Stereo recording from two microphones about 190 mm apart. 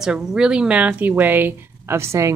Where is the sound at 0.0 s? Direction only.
5° right (ahead or behind).